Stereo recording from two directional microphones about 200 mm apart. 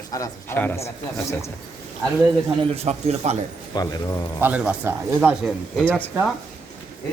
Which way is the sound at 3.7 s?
20° left (ahead or behind).